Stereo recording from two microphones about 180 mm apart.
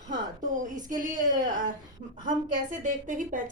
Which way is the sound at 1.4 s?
45° right (ahead or behind).